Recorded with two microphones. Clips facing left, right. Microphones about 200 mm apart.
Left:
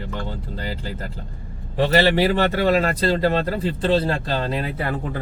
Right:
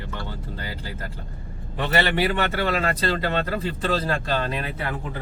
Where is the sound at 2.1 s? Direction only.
35° left (ahead or behind).